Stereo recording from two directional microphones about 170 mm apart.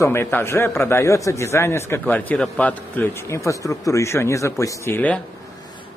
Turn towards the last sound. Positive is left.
turn(degrees=10)  # may be behind; listen again after turning